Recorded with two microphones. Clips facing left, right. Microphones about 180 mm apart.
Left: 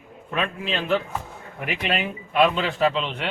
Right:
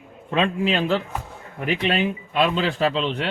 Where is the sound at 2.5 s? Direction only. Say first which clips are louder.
Right 1 dB; 30° right (ahead or behind).